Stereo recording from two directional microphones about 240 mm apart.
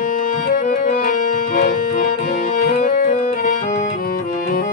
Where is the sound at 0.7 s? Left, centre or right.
Left.